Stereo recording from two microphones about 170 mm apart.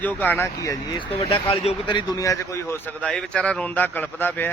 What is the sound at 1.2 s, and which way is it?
A man's voice, 35° left (ahead or behind).